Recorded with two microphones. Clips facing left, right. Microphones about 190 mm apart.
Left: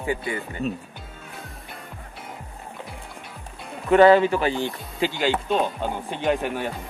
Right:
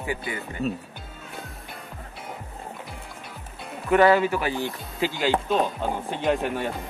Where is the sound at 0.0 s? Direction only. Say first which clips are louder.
Left 4 dB; 25° left (ahead or behind).